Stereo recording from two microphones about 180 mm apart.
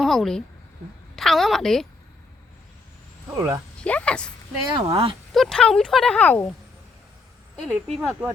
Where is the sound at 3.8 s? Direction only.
5° left (ahead or behind).